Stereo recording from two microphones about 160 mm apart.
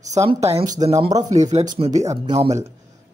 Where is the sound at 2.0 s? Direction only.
20° right (ahead or behind).